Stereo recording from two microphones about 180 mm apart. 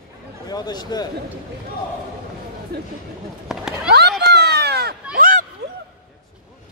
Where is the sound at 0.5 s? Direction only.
20° left (ahead or behind).